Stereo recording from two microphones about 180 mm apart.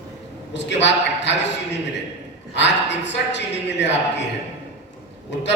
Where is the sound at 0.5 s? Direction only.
80° left.